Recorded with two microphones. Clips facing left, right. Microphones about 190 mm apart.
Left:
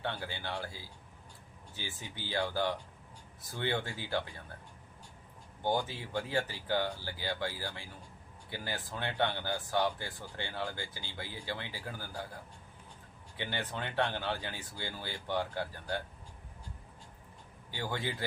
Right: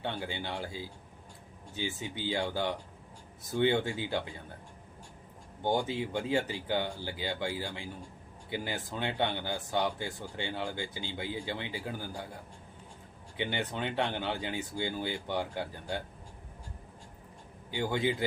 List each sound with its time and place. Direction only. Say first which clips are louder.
0.0 s speech: right 2 dB; 20° right (ahead or behind)
5.6 s speech: right 3 dB; 20° right (ahead or behind)
13.3 s speech: right 4 dB; 15° right (ahead or behind)
17.7 s speech: right 7 dB; 15° right (ahead or behind)